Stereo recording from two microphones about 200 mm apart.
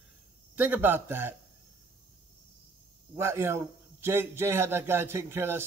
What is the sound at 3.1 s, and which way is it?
A man's voice, 15° right (ahead or behind).